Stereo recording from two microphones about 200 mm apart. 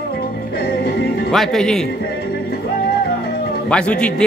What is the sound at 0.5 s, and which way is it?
Music, 50° left (ahead or behind).